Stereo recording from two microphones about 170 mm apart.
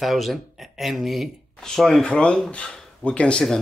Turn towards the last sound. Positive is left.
turn(degrees=5)  # may be behind; listen again after turning